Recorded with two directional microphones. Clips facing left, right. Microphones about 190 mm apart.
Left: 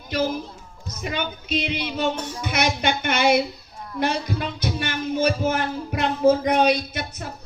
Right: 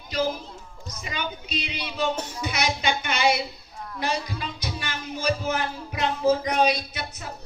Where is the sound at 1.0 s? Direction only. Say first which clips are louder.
Left 5 dB; 50° left (ahead or behind).